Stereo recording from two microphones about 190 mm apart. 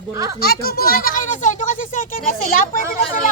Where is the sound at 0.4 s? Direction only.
55° left (ahead or behind).